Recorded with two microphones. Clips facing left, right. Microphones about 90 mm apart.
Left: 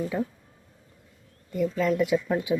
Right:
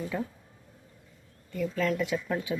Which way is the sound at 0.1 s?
15° left (ahead or behind).